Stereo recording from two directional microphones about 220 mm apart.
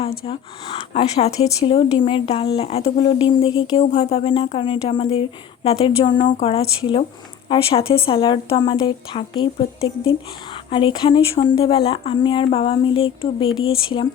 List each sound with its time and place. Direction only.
0.0 s speech: 25° left (ahead or behind)